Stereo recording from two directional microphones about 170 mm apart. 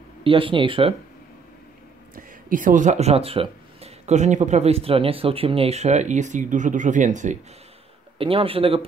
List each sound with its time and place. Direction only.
0.2 s speech: 30° right (ahead or behind)
2.1 s speech: 50° right (ahead or behind)
8.2 s speech: 35° right (ahead or behind)